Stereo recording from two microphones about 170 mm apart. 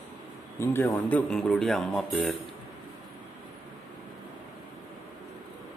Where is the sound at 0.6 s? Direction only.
15° left (ahead or behind).